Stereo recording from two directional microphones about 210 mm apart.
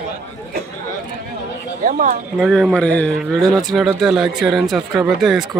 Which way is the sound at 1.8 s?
40° right (ahead or behind).